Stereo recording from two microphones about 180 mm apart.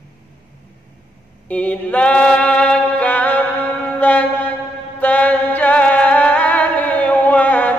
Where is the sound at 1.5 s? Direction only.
10° left (ahead or behind).